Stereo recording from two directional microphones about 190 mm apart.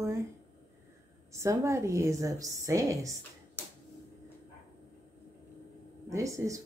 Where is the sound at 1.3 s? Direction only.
15° right (ahead or behind).